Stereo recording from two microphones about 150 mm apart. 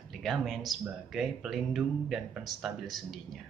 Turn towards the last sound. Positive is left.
turn(degrees=0)  # may be behind; listen again after turning